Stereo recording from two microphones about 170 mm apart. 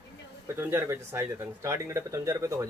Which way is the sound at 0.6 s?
15° right (ahead or behind).